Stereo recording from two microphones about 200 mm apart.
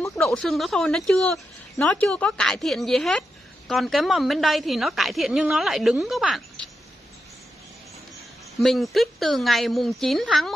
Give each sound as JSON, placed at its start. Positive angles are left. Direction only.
{"t": 0.2, "sound": "speech", "side_deg": 5}
{"t": 8.5, "sound": "speech", "side_deg": 0}